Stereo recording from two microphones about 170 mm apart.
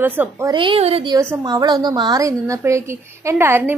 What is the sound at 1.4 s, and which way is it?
A woman's voice, 25° right (ahead or behind).